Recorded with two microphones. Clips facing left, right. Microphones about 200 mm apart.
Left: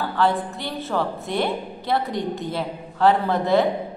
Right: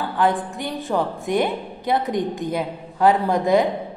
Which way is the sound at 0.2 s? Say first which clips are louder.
Right 1 dB; 15° right (ahead or behind).